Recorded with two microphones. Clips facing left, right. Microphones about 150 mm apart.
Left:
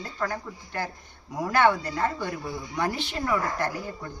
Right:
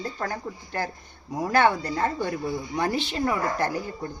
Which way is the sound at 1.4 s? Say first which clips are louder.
Right 1 dB; 30° right (ahead or behind).